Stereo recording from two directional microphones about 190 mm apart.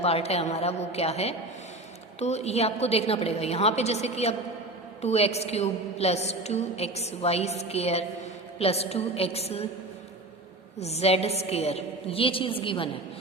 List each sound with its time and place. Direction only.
0.0 s a woman's voice: 35° left (ahead or behind)
10.8 s a woman's voice: 35° left (ahead or behind)